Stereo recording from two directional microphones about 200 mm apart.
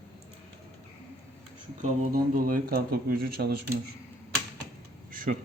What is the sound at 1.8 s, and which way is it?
Speech, 45° right (ahead or behind).